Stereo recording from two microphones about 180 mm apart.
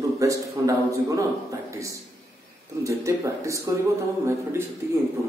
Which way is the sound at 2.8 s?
15° right (ahead or behind).